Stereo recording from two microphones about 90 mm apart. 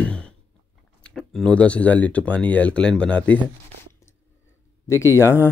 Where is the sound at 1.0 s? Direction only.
5° left (ahead or behind).